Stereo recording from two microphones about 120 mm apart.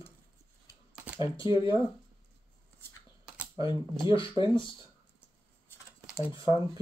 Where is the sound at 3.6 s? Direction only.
45° left (ahead or behind).